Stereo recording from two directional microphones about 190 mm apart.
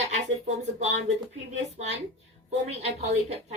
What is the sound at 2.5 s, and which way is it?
Speech, 35° right (ahead or behind).